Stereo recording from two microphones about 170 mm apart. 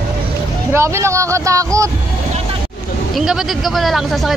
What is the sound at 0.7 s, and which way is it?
Speech, 15° right (ahead or behind).